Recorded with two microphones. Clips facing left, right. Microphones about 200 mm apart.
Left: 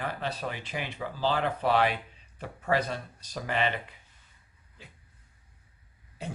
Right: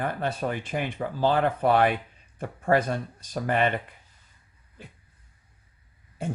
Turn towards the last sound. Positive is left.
turn(degrees=-50)  # may be behind; listen again after turning